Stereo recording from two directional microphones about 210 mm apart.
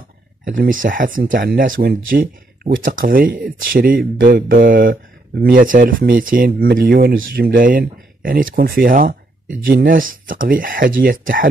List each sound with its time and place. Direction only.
0.5 s speech: 40° right (ahead or behind)